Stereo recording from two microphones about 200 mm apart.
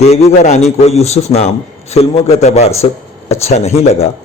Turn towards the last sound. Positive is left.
turn(degrees=30)  # may be behind; listen again after turning